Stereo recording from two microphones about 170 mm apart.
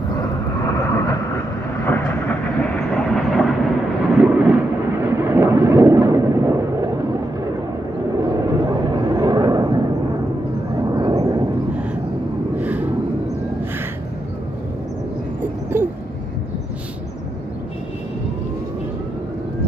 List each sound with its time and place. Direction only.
0.8 s vehicle: 15° left (ahead or behind)
1.9 s train: 15° left (ahead or behind)
4.1 s vehicle: 5° right (ahead or behind)
5.1 s a sound: 15° right (ahead or behind)
8.2 s vehicle: 25° right (ahead or behind)
10.8 s vehicle: 25° right (ahead or behind)
11.7 s vehicle: 5° right (ahead or behind)
15.7 s a sound: 10° right (ahead or behind)